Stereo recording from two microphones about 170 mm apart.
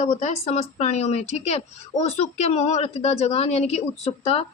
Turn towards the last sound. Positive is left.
turn(degrees=35)  # may be behind; listen again after turning